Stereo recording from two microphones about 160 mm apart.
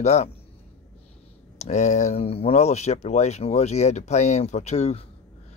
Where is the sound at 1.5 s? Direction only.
45° left (ahead or behind).